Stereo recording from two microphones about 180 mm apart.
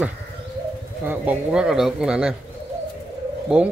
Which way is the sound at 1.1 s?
10° right (ahead or behind).